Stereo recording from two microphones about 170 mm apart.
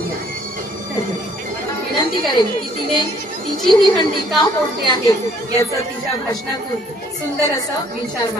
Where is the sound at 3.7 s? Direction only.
25° left (ahead or behind).